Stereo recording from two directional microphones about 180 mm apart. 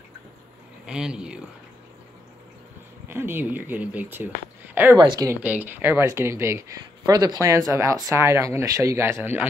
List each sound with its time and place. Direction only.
0.8 s speech: 5° right (ahead or behind)
3.1 s speech: 10° right (ahead or behind)
4.9 s speech: 25° right (ahead or behind)
5.4 s speech: 10° right (ahead or behind)